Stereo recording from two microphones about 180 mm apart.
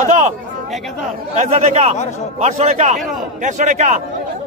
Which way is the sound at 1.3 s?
40° right (ahead or behind).